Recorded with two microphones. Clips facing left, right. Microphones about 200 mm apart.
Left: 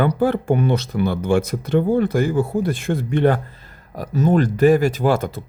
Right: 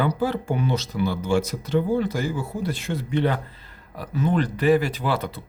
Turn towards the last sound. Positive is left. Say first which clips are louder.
# left 7 dB
turn(degrees=45)  # may be behind; listen again after turning